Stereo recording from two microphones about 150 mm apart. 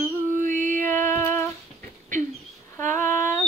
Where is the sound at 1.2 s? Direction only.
15° left (ahead or behind).